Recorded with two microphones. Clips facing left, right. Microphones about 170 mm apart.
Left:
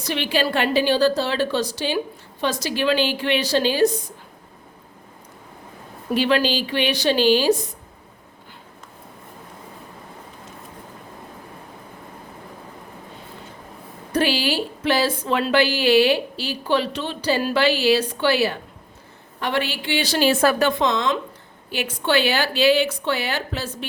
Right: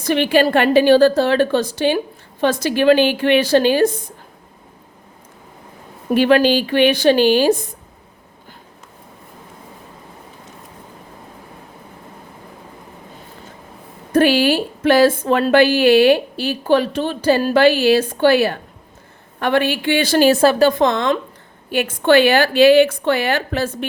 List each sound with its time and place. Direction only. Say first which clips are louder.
0.0 s speech: right 8 dB; 50° right (ahead or behind)
6.1 s speech: right 7 dB; 50° right (ahead or behind)
14.1 s speech: right 7 dB; 50° right (ahead or behind)
20.4 s a woman's voice: right 5 dB; 30° right (ahead or behind)
20.7 s speech: right 5 dB; 55° right (ahead or behind)